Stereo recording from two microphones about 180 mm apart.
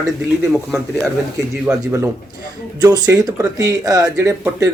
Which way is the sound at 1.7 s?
15° right (ahead or behind).